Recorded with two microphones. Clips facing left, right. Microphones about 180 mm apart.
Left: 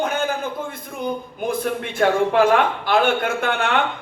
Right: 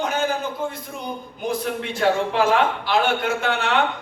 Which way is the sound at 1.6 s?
50° left (ahead or behind).